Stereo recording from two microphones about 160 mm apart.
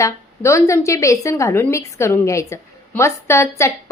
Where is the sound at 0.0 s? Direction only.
20° left (ahead or behind).